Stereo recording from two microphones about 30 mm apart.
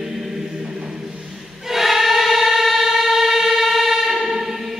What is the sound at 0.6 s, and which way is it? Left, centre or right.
Music, right.